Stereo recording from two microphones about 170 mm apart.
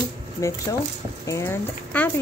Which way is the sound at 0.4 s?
20° left (ahead or behind).